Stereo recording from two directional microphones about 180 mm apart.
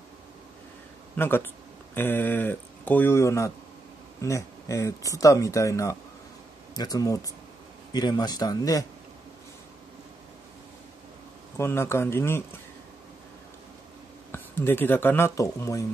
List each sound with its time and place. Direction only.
1.1 s speech: 10° left (ahead or behind)
11.5 s speech: 15° left (ahead or behind)
14.3 s speech: 10° left (ahead or behind)